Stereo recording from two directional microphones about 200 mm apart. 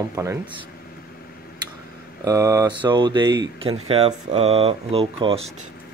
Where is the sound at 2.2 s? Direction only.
15° right (ahead or behind).